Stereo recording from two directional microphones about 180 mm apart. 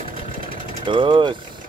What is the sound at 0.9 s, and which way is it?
Mechanisms, 25° right (ahead or behind).